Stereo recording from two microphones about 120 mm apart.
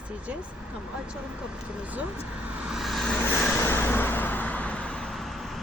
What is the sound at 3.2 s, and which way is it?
Vehicle, 15° left (ahead or behind).